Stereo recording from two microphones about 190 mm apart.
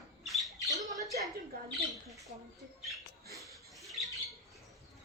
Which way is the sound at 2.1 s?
Centre (ahead or behind).